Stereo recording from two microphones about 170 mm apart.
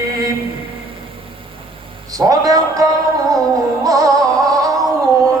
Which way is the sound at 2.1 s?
20° right (ahead or behind).